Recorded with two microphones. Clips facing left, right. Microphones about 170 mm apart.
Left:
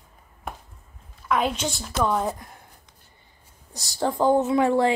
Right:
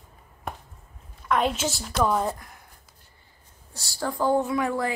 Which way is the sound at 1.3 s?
Centre (ahead or behind).